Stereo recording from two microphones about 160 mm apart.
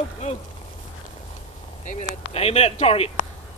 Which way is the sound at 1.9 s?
45° left (ahead or behind).